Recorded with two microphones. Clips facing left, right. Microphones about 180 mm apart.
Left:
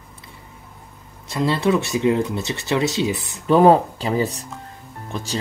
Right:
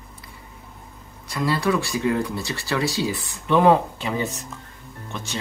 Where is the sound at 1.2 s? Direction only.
25° left (ahead or behind).